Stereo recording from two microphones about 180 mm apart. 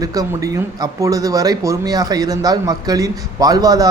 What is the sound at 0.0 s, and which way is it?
Speech, 20° right (ahead or behind).